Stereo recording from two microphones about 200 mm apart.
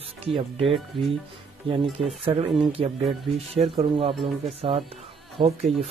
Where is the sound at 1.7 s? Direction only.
25° right (ahead or behind).